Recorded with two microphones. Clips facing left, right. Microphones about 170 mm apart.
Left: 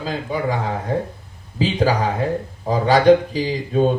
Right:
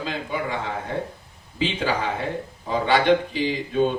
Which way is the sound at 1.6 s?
40° left (ahead or behind).